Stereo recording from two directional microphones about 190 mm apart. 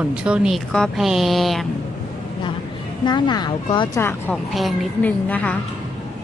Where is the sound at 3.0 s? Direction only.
25° left (ahead or behind).